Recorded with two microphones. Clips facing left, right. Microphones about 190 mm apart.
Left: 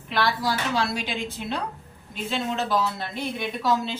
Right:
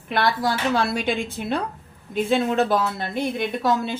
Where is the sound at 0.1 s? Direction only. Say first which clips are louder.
Right 3 dB; 50° right (ahead or behind).